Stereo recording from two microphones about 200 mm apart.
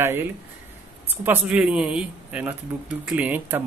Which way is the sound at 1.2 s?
5° right (ahead or behind).